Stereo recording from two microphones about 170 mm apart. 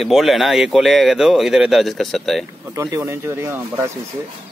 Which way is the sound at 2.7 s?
20° right (ahead or behind).